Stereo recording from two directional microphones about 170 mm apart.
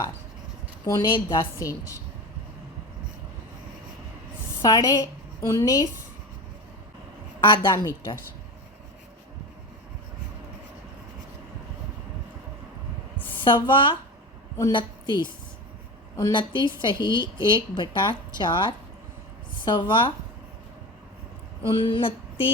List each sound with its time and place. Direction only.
0.9 s a woman's voice: 25° left (ahead or behind)
4.6 s a woman's voice: 20° left (ahead or behind)
7.4 s a woman's voice: 25° left (ahead or behind)
13.4 s a woman's voice: 30° left (ahead or behind)
21.8 s a woman's voice: 30° left (ahead or behind)